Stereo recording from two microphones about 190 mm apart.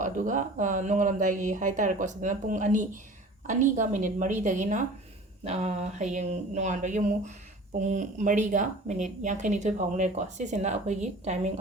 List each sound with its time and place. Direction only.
0.0 s speech: 40° right (ahead or behind)